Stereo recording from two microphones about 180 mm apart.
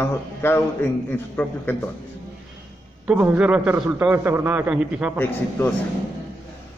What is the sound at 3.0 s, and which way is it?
A man's voice, 10° right (ahead or behind).